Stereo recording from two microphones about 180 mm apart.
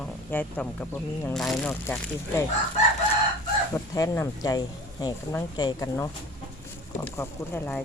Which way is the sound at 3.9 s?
15° left (ahead or behind).